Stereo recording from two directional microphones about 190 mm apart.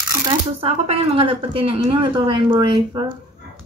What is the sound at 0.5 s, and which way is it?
A woman's voice, 30° right (ahead or behind).